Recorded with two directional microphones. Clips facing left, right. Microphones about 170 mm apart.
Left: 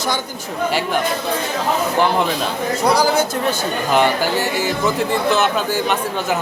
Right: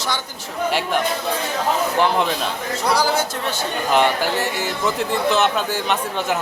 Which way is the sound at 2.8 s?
15° left (ahead or behind).